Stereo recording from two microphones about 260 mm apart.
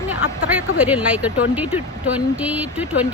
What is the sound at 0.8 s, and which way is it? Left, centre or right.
Speech, centre.